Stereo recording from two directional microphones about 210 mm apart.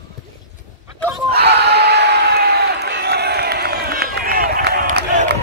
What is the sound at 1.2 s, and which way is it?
Crowd, 50° right (ahead or behind).